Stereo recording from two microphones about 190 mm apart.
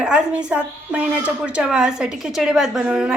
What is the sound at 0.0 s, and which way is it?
A woman's voice, 5° right (ahead or behind).